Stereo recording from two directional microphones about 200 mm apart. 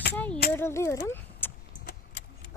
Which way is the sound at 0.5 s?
10° left (ahead or behind).